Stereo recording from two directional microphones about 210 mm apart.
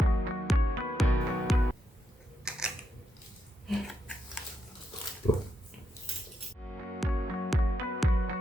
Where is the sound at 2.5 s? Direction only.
5° right (ahead or behind).